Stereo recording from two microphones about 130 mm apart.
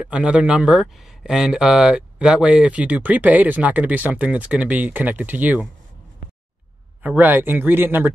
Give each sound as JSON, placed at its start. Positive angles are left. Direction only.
{"t": 0.0, "sound": "speech", "side_deg": -10}
{"t": 7.0, "sound": "speech", "side_deg": -10}